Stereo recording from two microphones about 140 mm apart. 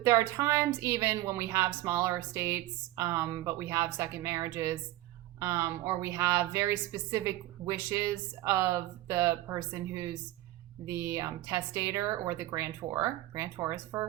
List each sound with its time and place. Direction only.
0.0 s a woman's voice: 20° right (ahead or behind)